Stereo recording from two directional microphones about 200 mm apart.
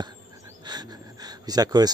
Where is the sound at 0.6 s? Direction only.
20° right (ahead or behind).